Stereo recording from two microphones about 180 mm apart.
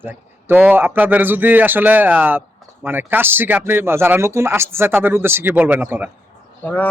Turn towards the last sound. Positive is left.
turn(degrees=10)  # may be behind; listen again after turning